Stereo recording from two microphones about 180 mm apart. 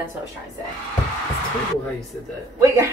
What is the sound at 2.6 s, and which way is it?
Speech, 15° right (ahead or behind).